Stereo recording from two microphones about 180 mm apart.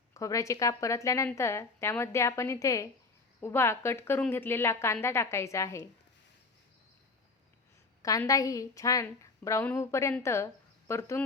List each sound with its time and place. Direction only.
0.1 s a woman's voice: 15° left (ahead or behind)
8.0 s a woman's voice: 20° left (ahead or behind)